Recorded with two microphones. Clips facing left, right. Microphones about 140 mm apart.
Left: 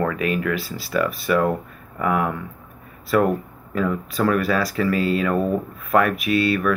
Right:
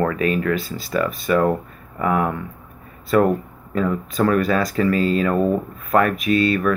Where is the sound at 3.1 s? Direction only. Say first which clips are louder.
Right 2 dB; 5° left (ahead or behind).